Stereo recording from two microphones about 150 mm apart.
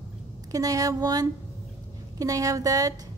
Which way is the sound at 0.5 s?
25° right (ahead or behind).